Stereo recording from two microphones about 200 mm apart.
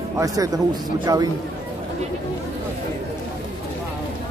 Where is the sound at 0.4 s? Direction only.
15° right (ahead or behind).